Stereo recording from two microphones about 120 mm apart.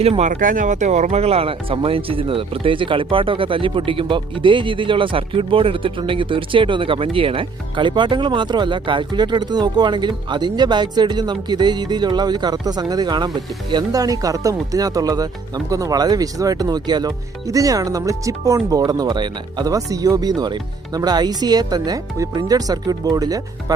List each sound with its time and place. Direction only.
0.0 s speech: 65° right (ahead or behind); by 23.7 s 30° right (ahead or behind)